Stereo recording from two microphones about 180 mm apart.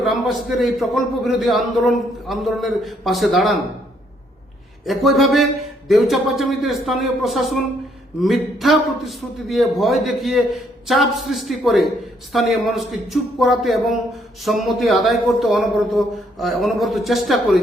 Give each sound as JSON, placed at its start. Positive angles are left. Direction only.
{"t": 0.0, "sound": "a man's voice", "side_deg": 0}
{"t": 4.9, "sound": "a man's voice", "side_deg": 0}